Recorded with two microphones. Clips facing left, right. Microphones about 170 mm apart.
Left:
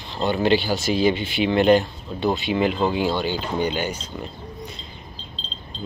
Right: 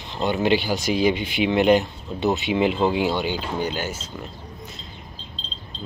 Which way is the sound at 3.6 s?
5° right (ahead or behind).